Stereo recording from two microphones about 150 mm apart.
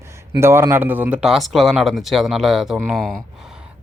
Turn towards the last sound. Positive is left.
turn(degrees=0)  # may be behind; listen again after turning